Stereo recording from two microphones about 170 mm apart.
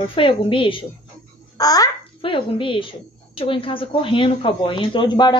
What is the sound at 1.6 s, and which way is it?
A child's voice, 20° left (ahead or behind).